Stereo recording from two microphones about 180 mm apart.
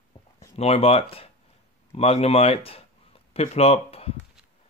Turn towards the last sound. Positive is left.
turn(degrees=35)  # may be behind; listen again after turning